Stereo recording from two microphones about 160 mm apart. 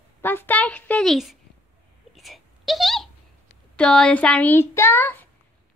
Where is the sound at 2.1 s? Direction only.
Centre (ahead or behind).